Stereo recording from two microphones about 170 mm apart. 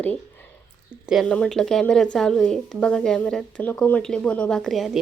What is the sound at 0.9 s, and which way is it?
A woman's voice, 5° right (ahead or behind).